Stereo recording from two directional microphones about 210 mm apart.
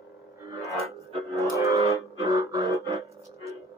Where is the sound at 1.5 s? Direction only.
15° right (ahead or behind).